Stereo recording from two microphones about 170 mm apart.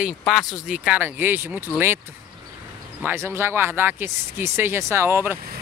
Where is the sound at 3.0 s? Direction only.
10° right (ahead or behind).